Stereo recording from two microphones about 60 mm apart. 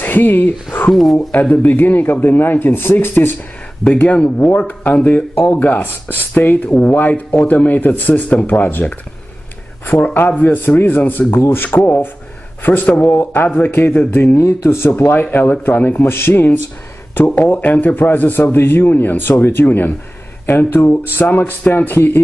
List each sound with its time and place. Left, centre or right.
0.0 s a man's voice: left
4.0 s speech: left
10.4 s a man's voice: left
14.4 s a man's voice: left
17.1 s a man's voice: left